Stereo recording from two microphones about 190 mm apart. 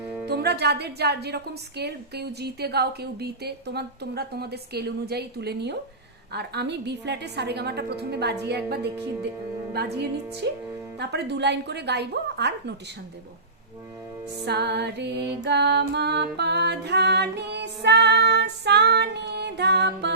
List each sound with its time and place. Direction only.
0.3 s a woman's voice: 60° right (ahead or behind)
14.4 s a woman's voice: 60° right (ahead or behind)
15.4 s music: 60° right (ahead or behind)